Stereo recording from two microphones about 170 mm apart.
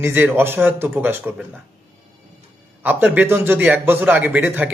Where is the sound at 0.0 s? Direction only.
10° right (ahead or behind).